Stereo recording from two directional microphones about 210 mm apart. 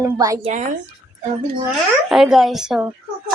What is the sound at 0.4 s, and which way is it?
Speech, 35° right (ahead or behind).